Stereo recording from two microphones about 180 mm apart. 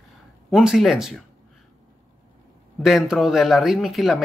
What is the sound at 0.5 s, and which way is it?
Speech, centre (ahead or behind).